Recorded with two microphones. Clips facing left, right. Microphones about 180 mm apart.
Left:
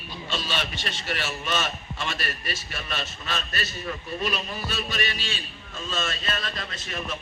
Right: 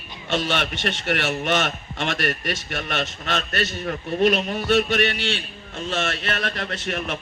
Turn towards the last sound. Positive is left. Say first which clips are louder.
# right 6 dB
turn(degrees=-70)  # may be behind; listen again after turning